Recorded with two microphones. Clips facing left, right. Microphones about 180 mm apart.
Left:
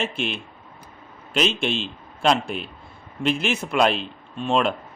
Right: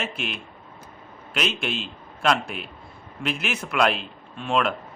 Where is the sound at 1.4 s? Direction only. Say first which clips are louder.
Left 4 dB; 30° left (ahead or behind).